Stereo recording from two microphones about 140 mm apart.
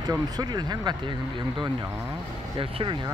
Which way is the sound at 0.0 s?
30° right (ahead or behind).